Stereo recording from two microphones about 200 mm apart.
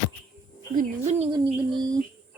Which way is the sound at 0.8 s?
35° right (ahead or behind).